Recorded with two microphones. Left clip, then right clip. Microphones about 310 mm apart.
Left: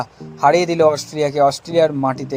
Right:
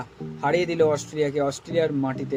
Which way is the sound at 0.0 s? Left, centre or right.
Centre.